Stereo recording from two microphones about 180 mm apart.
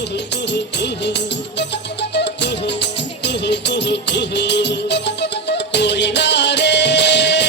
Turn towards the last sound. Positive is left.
turn(degrees=75)  # may be behind; listen again after turning